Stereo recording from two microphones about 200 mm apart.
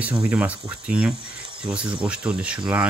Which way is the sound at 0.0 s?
5° right (ahead or behind).